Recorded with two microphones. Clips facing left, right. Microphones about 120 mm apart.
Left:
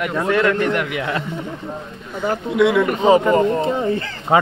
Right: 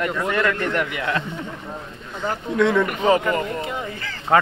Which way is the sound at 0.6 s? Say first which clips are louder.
Left 4 dB; 15° left (ahead or behind).